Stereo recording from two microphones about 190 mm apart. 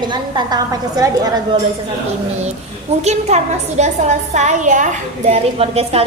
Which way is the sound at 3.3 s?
35° right (ahead or behind).